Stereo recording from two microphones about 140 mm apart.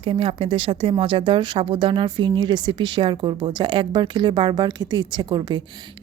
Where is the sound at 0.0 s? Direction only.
40° right (ahead or behind).